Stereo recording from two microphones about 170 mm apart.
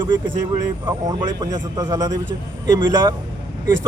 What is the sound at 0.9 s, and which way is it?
A man's voice, 25° right (ahead or behind).